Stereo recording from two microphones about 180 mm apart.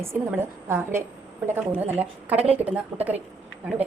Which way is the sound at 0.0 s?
15° right (ahead or behind).